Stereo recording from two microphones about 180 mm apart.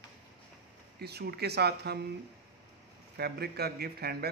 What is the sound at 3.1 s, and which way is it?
Speech, 65° right (ahead or behind).